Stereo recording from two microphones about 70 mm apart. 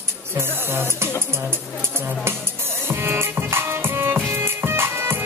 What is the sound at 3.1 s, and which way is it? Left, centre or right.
Music, right.